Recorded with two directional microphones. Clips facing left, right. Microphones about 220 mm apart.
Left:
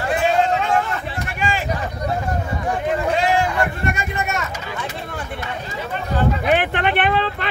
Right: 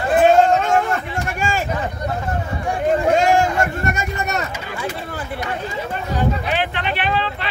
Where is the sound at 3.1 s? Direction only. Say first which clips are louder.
Right 3 dB; 45° right (ahead or behind).